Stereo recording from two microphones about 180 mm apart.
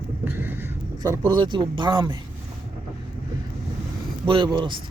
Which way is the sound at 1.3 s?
25° right (ahead or behind).